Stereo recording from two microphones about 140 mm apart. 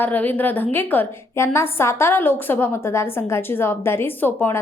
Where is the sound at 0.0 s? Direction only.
10° left (ahead or behind).